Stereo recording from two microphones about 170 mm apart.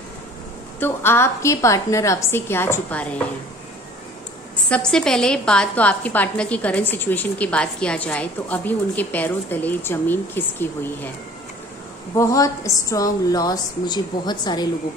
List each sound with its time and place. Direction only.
0.7 s a woman's voice: 15° left (ahead or behind)
4.6 s a woman's voice: 5° left (ahead or behind)
12.2 s a woman's voice: 20° left (ahead or behind)